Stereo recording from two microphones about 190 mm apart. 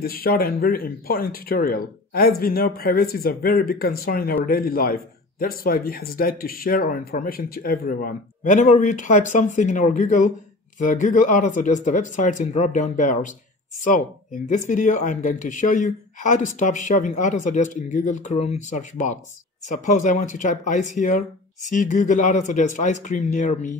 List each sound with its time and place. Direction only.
0.0 s speech: 50° left (ahead or behind)